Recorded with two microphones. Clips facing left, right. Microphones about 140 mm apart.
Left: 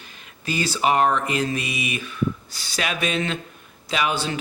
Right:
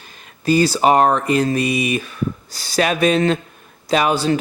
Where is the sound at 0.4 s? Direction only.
40° right (ahead or behind).